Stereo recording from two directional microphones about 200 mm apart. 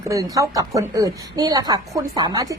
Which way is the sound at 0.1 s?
15° right (ahead or behind).